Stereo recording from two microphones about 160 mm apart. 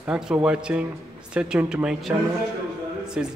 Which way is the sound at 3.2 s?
5° right (ahead or behind).